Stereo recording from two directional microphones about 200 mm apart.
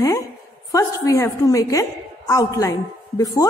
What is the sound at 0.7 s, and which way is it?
A woman's voice, 15° left (ahead or behind).